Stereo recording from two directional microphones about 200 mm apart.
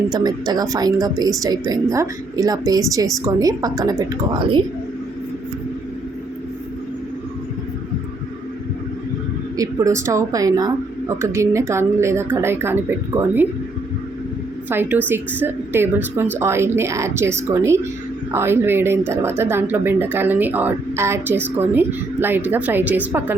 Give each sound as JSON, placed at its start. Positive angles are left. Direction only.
{"t": 0.1, "sound": "speech", "side_deg": -20}
{"t": 9.6, "sound": "speech", "side_deg": -15}
{"t": 14.7, "sound": "speech", "side_deg": -10}